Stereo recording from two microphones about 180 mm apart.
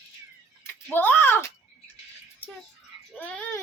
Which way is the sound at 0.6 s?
10° left (ahead or behind).